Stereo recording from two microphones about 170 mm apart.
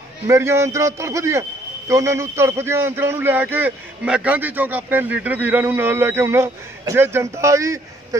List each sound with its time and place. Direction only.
0.3 s a man's voice: 15° right (ahead or behind)